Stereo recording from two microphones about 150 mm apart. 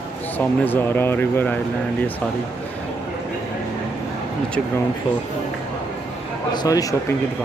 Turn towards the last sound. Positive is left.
turn(degrees=25)  # may be behind; listen again after turning